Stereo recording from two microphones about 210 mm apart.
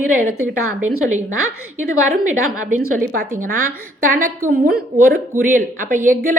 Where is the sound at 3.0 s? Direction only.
45° right (ahead or behind).